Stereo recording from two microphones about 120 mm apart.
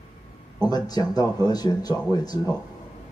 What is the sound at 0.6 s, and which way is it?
Speech, 35° left (ahead or behind).